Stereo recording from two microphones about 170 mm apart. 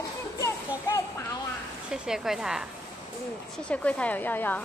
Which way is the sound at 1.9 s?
5° right (ahead or behind).